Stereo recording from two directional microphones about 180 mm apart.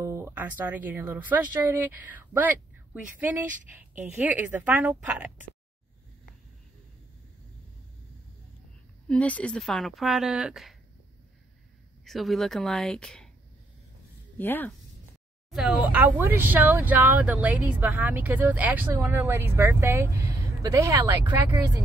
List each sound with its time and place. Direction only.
0.0 s a woman's voice: 15° right (ahead or behind)
9.0 s speech: 5° left (ahead or behind)
12.0 s speech: centre (ahead or behind)
14.4 s speech: 10° left (ahead or behind)
15.5 s a woman's voice: 5° right (ahead or behind)